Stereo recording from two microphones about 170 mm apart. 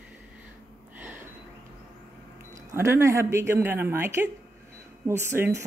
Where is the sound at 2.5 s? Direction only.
20° right (ahead or behind).